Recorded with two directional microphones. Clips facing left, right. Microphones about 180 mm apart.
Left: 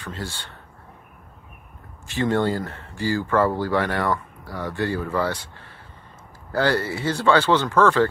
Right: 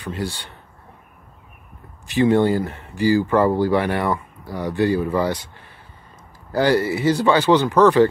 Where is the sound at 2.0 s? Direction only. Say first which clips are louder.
Right 5 dB; 15° right (ahead or behind).